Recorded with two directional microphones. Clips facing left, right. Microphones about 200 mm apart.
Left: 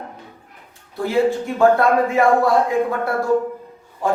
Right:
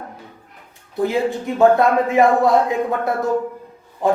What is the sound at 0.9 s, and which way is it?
Speech, 20° right (ahead or behind).